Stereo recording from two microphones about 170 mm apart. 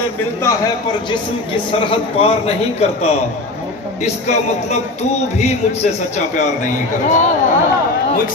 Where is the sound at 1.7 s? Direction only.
35° left (ahead or behind).